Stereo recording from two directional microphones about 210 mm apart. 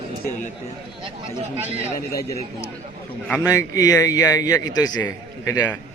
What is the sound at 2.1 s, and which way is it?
A man's voice, 15° left (ahead or behind).